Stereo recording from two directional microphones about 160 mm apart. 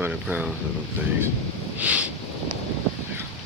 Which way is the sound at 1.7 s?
10° right (ahead or behind).